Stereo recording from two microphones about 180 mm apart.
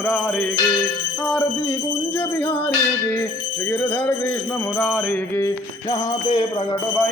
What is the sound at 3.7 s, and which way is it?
Speech, 10° left (ahead or behind).